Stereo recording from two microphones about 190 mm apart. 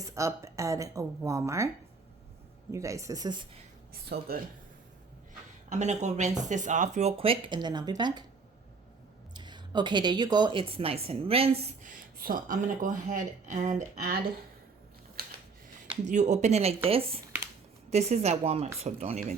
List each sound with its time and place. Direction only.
0.0 s speech: 15° right (ahead or behind)
2.7 s speech: 15° right (ahead or behind)
4.1 s speech: 55° right (ahead or behind)
5.6 s speech: 40° right (ahead or behind); by 8.2 s 25° right (ahead or behind)
9.3 s speech: 25° right (ahead or behind); by 14.2 s 45° right (ahead or behind)
15.2 s a sound: 50° right (ahead or behind)
16.0 s speech: 40° right (ahead or behind)